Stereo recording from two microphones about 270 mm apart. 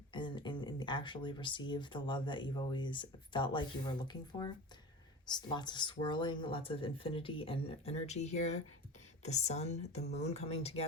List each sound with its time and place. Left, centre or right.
0.1 s speech: centre